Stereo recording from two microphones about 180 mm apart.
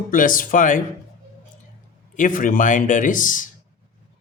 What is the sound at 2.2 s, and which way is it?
Speech, 50° left (ahead or behind).